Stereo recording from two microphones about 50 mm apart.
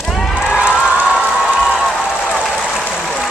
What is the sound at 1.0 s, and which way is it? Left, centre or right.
Applause, centre.